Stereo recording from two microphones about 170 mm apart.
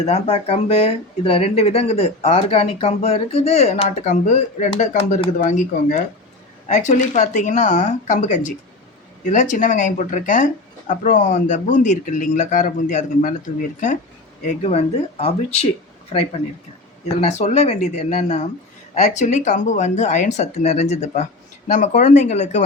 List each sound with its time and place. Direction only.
0.0 s speech: 40° left (ahead or behind)
17.2 s speech: 40° left (ahead or behind)